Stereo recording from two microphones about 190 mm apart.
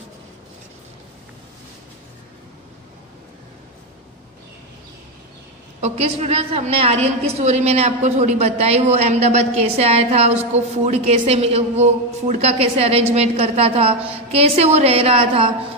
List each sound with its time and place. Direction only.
5.8 s a woman's voice: 35° right (ahead or behind)